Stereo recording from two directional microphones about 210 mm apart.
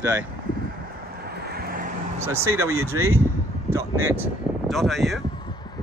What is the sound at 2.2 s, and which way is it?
Speech, 10° right (ahead or behind).